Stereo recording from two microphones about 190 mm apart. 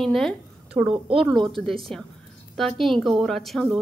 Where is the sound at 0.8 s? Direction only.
10° right (ahead or behind).